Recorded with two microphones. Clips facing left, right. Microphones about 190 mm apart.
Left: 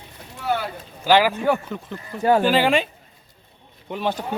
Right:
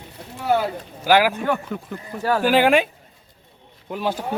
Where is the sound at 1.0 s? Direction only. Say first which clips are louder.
Even; 10° right (ahead or behind).